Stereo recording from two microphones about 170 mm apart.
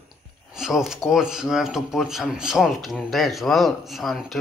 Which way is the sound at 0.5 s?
5° right (ahead or behind).